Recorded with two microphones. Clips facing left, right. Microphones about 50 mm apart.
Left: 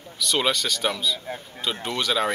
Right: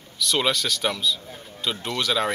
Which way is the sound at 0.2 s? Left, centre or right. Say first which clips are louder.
Even; centre.